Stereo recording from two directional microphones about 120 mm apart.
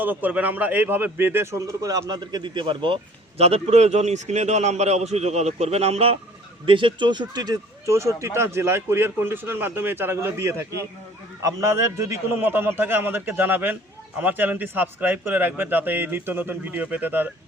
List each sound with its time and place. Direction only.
0.0 s a man's voice: 15° right (ahead or behind); by 6.1 s 55° right (ahead or behind)
6.7 s a man's voice: 45° right (ahead or behind); by 17.3 s 15° right (ahead or behind)